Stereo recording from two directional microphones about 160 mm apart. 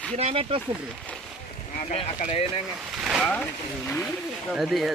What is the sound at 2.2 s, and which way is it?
Speech, 40° left (ahead or behind).